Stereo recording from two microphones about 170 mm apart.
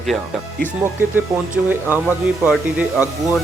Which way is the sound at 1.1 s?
10° right (ahead or behind).